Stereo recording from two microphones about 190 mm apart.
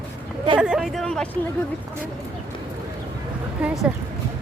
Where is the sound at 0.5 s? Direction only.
5° right (ahead or behind).